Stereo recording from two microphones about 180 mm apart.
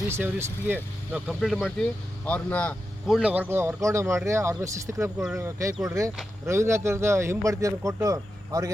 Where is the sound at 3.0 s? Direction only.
5° right (ahead or behind).